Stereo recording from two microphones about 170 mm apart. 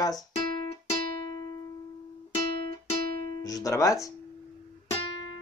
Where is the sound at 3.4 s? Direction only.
20° left (ahead or behind).